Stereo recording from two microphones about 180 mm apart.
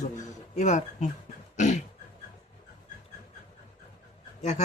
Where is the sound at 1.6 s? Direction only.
40° left (ahead or behind).